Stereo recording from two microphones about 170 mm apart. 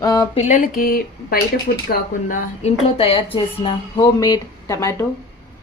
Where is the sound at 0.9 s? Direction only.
60° left (ahead or behind).